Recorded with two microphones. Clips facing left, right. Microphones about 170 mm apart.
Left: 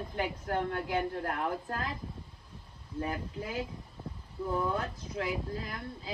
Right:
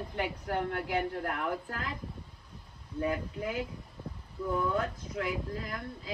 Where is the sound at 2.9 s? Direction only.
35° left (ahead or behind).